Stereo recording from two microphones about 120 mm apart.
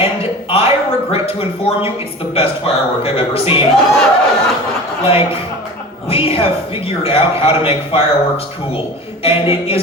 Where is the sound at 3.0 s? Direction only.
55° left (ahead or behind).